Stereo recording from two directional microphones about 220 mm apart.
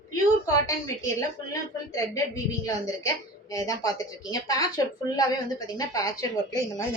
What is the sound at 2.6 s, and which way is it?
A woman's voice, 15° left (ahead or behind).